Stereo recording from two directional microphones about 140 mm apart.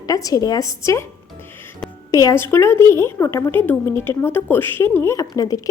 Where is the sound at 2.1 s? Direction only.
25° left (ahead or behind).